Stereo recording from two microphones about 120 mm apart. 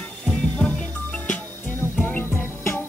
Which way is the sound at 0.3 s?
10° left (ahead or behind).